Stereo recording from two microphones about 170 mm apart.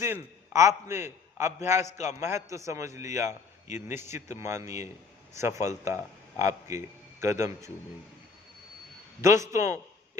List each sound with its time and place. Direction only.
0.0 s a man's voice: 15° right (ahead or behind)
9.2 s a man's voice: 15° right (ahead or behind)